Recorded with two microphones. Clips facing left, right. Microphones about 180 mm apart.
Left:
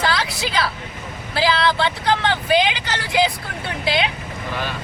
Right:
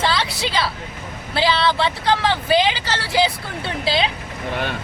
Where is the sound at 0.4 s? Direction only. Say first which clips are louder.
Even; 25° right (ahead or behind).